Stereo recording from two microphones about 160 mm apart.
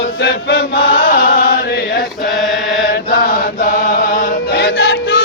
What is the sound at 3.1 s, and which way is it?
Chant, 65° left (ahead or behind).